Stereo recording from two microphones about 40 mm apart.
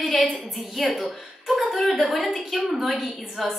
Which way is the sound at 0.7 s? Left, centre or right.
Centre.